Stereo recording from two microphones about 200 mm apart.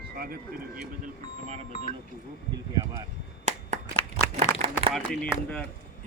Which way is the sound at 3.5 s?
35° right (ahead or behind).